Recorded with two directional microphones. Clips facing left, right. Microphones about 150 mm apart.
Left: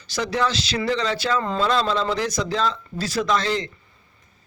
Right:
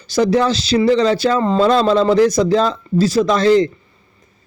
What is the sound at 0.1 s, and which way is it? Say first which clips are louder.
A man's voice: right 9 dB; 35° right (ahead or behind).